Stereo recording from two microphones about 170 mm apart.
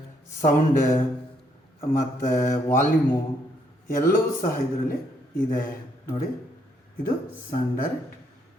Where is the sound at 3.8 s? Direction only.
55° left (ahead or behind).